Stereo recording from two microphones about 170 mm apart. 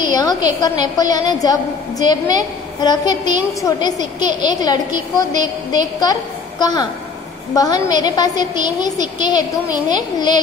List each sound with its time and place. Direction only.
0.1 s a woman's voice: 20° left (ahead or behind)